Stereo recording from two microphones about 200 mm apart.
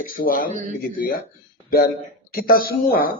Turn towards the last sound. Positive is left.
turn(degrees=45)  # may be behind; listen again after turning